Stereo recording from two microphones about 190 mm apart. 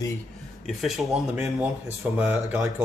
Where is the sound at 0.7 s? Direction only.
Centre (ahead or behind).